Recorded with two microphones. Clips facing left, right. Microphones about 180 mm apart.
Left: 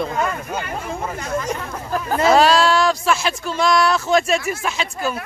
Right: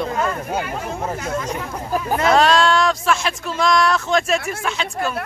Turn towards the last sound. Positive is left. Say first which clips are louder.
# left 1 dB
turn(degrees=5)  # may be behind; listen again after turning